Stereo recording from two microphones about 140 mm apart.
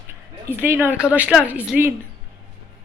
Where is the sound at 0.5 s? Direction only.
15° right (ahead or behind).